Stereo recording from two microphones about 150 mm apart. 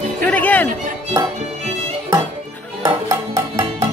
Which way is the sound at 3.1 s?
25° right (ahead or behind).